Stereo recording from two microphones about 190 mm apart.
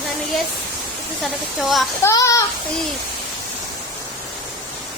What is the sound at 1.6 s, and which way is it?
Speech, centre (ahead or behind).